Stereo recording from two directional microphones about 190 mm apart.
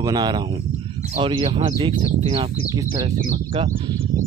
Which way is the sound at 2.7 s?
20° right (ahead or behind).